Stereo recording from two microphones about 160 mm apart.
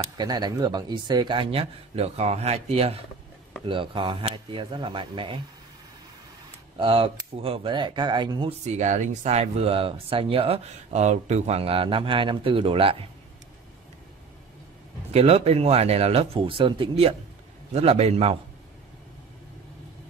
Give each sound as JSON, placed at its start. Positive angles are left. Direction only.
{"t": 0.0, "sound": "speech", "side_deg": -25}
{"t": 6.8, "sound": "speech", "side_deg": -35}
{"t": 8.6, "sound": "speech", "side_deg": -45}
{"t": 15.1, "sound": "speech", "side_deg": -40}